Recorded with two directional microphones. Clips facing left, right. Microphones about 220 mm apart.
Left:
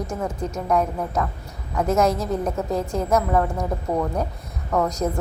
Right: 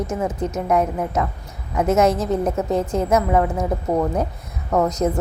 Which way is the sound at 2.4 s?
25° right (ahead or behind).